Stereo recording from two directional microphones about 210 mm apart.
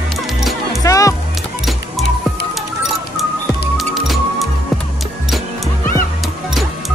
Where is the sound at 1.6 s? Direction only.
Centre (ahead or behind).